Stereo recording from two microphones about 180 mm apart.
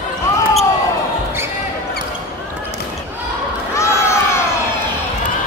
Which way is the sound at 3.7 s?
15° left (ahead or behind).